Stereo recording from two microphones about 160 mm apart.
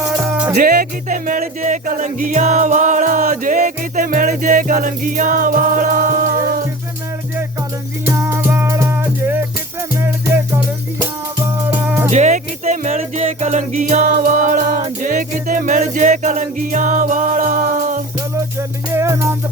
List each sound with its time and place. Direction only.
0.0 s music: 10° right (ahead or behind)
0.5 s music: 65° right (ahead or behind)
8.0 s music: 20° right (ahead or behind)
12.1 s music: 45° right (ahead or behind)
18.9 s music: 20° right (ahead or behind)